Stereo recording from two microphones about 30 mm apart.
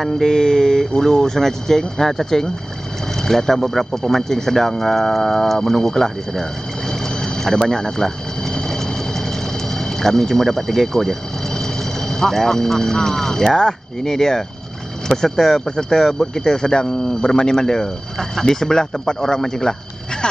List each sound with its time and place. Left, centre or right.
0.2 s speech: centre
6.9 s a sound: centre
9.9 s speech: centre